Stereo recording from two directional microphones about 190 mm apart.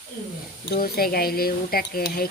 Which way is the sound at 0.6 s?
55° left (ahead or behind).